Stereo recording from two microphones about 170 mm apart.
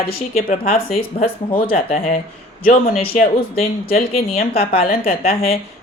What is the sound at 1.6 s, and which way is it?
Speech, 35° left (ahead or behind).